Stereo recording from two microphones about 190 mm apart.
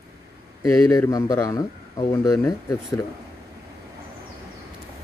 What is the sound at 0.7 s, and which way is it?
A man's voice, 15° left (ahead or behind).